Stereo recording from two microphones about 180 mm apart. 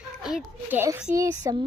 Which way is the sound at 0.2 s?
5° right (ahead or behind).